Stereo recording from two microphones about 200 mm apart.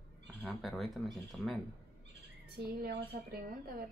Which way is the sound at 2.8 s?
50° right (ahead or behind).